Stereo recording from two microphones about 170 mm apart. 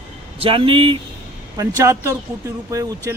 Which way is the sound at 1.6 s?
20° right (ahead or behind).